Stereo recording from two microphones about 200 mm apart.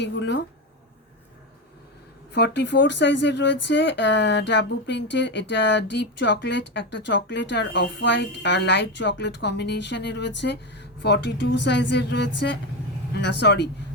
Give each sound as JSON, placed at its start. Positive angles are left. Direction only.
{"t": 0.0, "sound": "speech", "side_deg": 60}
{"t": 2.3, "sound": "speech", "side_deg": 60}